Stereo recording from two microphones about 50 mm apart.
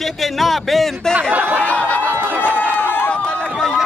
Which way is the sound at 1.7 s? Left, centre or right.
Left.